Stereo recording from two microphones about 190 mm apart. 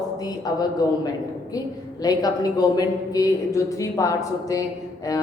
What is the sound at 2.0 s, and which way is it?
A woman's voice, 20° left (ahead or behind).